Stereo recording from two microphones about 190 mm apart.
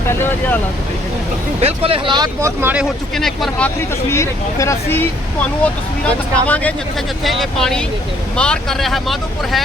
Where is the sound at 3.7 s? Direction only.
15° left (ahead or behind).